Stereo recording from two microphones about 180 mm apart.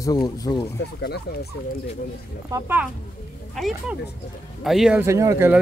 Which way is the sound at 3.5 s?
Centre (ahead or behind).